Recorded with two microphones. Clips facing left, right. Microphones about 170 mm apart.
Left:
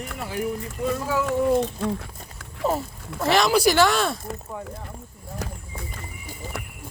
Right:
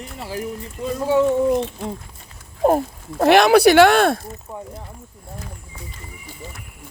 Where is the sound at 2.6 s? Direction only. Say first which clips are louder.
Right 8 dB; 55° right (ahead or behind).